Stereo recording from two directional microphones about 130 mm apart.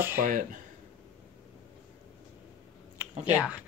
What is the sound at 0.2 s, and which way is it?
Speech, 85° right.